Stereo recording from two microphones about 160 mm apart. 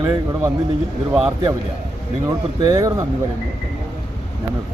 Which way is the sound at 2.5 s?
25° right (ahead or behind).